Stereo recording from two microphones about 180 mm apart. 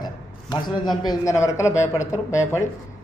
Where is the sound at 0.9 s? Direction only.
20° left (ahead or behind).